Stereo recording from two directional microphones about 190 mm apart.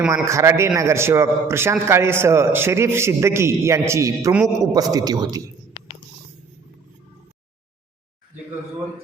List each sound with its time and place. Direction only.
0.1 s a man's voice: 15° right (ahead or behind)